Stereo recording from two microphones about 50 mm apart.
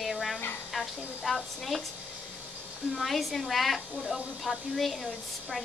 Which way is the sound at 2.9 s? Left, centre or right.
Centre.